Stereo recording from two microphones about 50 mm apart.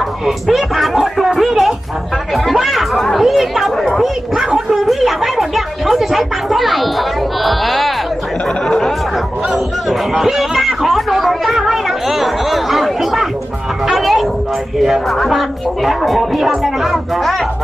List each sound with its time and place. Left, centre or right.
0.5 s speech: centre
2.3 s chatter: centre
8.6 s music: centre
9.5 s a sound: centre
14.8 s speech: centre